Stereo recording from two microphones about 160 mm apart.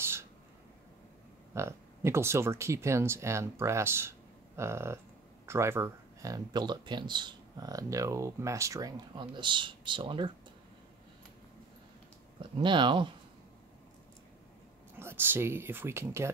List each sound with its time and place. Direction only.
0.0 s a sound: 15° right (ahead or behind)
1.5 s speech: 15° right (ahead or behind)
12.4 s speech: 30° right (ahead or behind)
15.0 s speech: 15° right (ahead or behind)